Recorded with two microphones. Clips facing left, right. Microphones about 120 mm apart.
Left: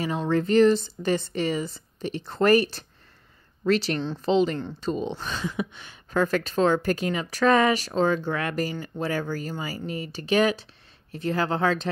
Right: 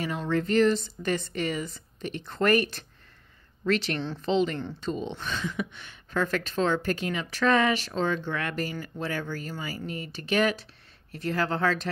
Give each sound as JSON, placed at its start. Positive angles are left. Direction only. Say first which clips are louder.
{"t": 0.3, "sound": "speech", "louder": "left 4 dB", "side_deg": 35}